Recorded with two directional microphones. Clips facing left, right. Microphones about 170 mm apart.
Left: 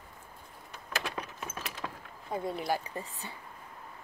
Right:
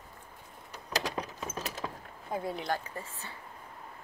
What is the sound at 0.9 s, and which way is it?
Keys jangling, 35° right (ahead or behind).